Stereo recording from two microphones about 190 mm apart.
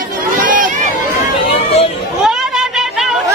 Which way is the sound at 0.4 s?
45° right (ahead or behind).